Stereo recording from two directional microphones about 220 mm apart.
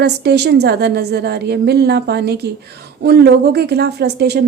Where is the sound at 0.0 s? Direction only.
50° right (ahead or behind).